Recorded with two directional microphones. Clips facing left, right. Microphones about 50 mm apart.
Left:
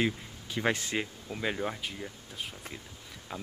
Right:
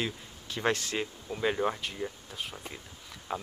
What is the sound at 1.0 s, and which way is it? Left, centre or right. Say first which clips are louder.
Speech: right 2 dB; centre.